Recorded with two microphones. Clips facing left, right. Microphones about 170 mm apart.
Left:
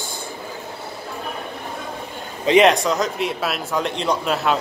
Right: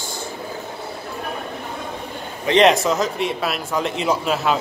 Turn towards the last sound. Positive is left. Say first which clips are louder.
# right 1 dB
turn(degrees=-5)  # may be behind; listen again after turning